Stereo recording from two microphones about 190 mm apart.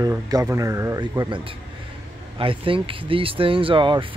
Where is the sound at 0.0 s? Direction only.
20° right (ahead or behind).